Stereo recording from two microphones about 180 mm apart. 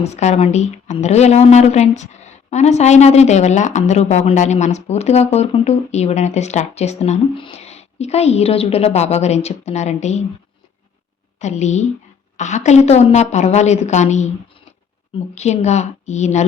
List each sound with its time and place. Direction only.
0.0 s speech: 40° left (ahead or behind)
11.3 s speech: 40° left (ahead or behind)